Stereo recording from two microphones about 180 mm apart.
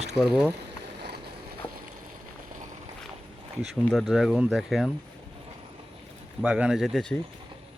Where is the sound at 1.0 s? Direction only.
65° right (ahead or behind).